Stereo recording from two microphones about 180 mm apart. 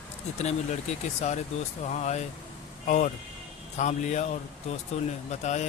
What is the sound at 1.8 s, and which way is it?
Speech, 40° left (ahead or behind).